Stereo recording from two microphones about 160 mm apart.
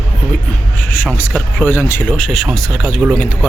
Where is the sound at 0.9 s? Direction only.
10° left (ahead or behind).